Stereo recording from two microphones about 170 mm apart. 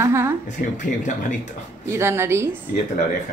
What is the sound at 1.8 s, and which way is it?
Speech, 15° right (ahead or behind).